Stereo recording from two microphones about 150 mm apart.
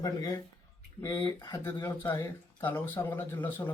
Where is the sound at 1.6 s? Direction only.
15° left (ahead or behind).